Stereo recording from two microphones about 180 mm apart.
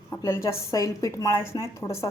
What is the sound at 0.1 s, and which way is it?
A woman's voice, 15° left (ahead or behind).